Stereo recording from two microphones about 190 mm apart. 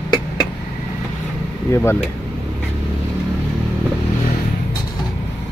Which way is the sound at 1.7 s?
15° left (ahead or behind).